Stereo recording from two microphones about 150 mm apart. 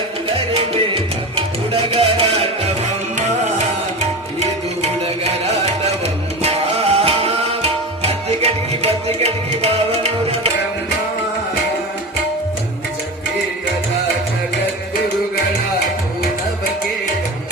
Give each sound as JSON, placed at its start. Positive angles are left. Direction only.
{"t": 1.4, "sound": "salsa music", "side_deg": -40}
{"t": 6.4, "sound": "music", "side_deg": -45}